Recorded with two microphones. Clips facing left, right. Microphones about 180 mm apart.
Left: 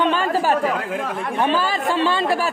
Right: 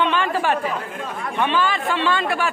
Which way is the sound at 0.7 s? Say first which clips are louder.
Left 4 dB; 90° left.